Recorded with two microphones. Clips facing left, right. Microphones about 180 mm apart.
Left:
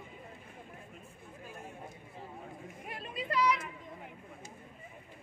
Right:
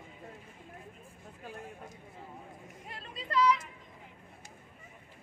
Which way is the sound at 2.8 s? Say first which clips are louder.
Left 4 dB; 15° left (ahead or behind).